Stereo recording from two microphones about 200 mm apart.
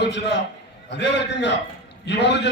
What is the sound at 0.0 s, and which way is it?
A man's voice, 60° left (ahead or behind).